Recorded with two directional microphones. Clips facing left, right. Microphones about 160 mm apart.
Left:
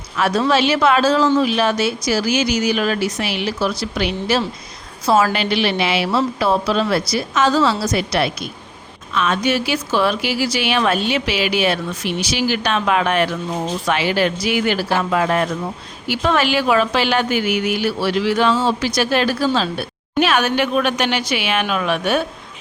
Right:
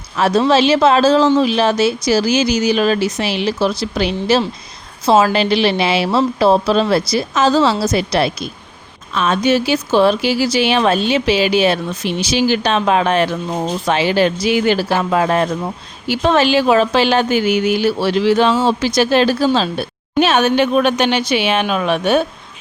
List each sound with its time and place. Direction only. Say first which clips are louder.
0.2 s speech: right 4 dB; 25° right (ahead or behind)